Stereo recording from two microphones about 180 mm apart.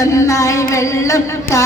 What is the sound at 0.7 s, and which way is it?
Music, 15° left (ahead or behind).